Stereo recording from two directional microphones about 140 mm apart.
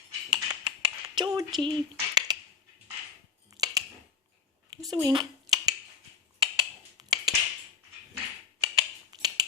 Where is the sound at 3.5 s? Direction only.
25° right (ahead or behind).